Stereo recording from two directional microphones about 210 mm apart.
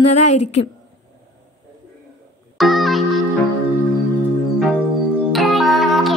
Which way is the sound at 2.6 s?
Centre (ahead or behind).